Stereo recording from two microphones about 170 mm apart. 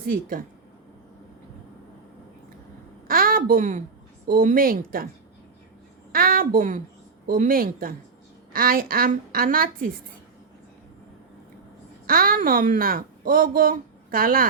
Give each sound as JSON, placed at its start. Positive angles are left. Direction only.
{"t": 0.0, "sound": "a woman's voice", "side_deg": -55}
{"t": 3.1, "sound": "a sound", "side_deg": -60}
{"t": 4.3, "sound": "a woman's voice", "side_deg": -55}
{"t": 6.1, "sound": "a woman's voice", "side_deg": -60}
{"t": 12.0, "sound": "speech", "side_deg": -60}